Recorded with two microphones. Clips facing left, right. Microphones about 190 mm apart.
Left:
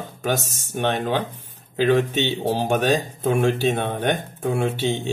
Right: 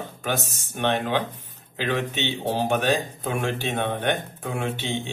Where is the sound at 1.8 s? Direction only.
45° left (ahead or behind).